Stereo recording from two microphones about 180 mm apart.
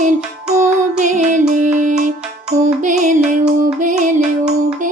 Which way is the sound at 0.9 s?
40° right (ahead or behind).